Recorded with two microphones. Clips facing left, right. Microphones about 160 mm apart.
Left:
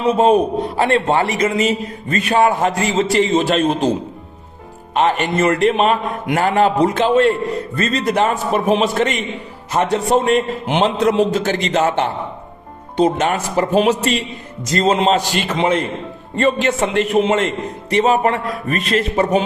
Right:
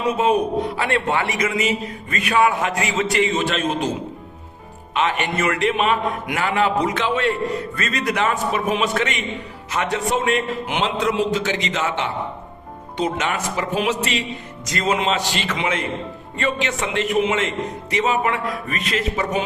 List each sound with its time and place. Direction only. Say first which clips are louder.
0.0 s a man's voice: left 5 dB; 30° left (ahead or behind)
4.9 s a man's voice: left 5 dB; 45° left (ahead or behind)
11.0 s a man's voice: left 5 dB; 50° left (ahead or behind); by 19.5 s 35° left (ahead or behind)